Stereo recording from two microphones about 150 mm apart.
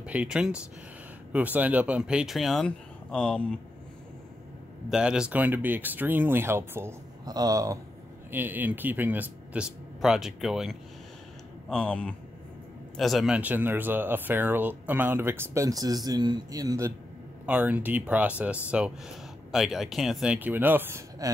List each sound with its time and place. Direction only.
0.0 s speech: 10° right (ahead or behind)
4.8 s speech: 5° right (ahead or behind); by 7.8 s 20° right (ahead or behind)
8.3 s speech: 10° right (ahead or behind)
17.5 s speech: 10° right (ahead or behind)